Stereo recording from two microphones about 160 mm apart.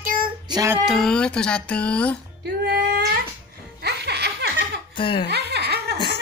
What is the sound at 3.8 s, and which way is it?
Music, 90° right.